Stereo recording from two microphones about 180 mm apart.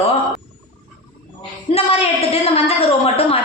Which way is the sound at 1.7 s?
35° left (ahead or behind).